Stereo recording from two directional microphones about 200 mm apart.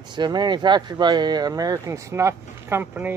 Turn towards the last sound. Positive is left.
turn(degrees=-10)  # may be behind; listen again after turning